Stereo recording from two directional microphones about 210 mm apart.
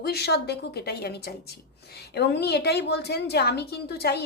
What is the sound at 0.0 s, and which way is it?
A woman's voice, 50° left (ahead or behind).